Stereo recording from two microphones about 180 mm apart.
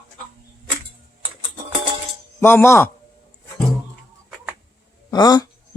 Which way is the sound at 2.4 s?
10° left (ahead or behind).